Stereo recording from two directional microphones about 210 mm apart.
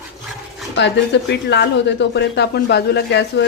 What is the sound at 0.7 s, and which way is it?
Speech, 55° left (ahead or behind).